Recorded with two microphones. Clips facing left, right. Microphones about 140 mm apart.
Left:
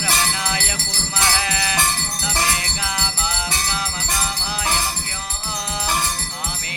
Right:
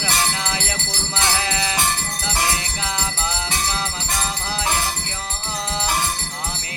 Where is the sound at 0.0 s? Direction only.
20° right (ahead or behind).